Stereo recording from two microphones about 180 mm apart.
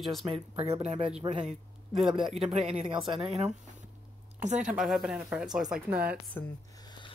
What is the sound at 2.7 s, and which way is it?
Speech, 30° right (ahead or behind).